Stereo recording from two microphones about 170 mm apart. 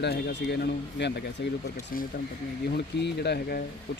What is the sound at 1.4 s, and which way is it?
Speech, 90° left.